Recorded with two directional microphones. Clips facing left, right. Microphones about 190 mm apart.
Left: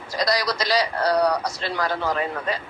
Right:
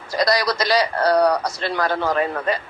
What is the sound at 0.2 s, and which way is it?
A man's voice, 60° right (ahead or behind).